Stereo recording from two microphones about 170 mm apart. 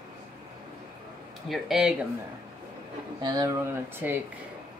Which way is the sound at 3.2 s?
20° right (ahead or behind).